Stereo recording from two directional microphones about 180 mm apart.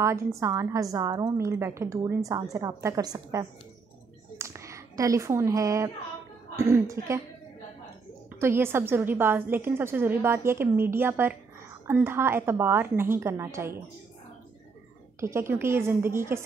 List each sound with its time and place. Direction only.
0.0 s a woman's voice: 15° right (ahead or behind)
4.4 s a sound: 15° right (ahead or behind)
6.5 s a woman's voice: 15° right (ahead or behind)
8.4 s a woman's voice: 15° right (ahead or behind)
15.1 s a woman's voice: 15° right (ahead or behind)